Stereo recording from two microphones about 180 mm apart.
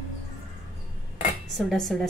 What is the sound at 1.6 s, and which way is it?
Speech, centre (ahead or behind).